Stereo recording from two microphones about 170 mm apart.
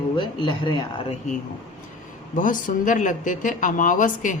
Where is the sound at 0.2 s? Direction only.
25° left (ahead or behind).